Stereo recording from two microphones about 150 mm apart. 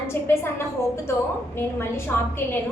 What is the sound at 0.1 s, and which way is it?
Speech, 15° left (ahead or behind).